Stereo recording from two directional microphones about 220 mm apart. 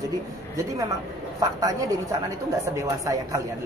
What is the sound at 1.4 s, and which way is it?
A man's voice, 15° right (ahead or behind).